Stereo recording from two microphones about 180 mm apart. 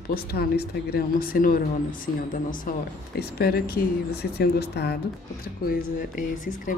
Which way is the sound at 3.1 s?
60° left (ahead or behind).